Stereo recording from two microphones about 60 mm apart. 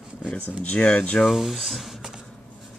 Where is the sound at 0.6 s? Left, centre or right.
Centre.